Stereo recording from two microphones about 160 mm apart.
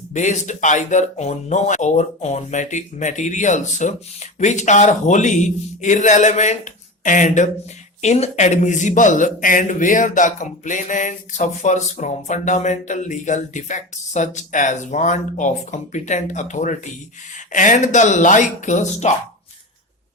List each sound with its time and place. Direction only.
0.1 s speech: 50° left (ahead or behind)